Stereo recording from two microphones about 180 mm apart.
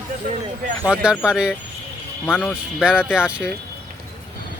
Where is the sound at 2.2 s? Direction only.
10° left (ahead or behind).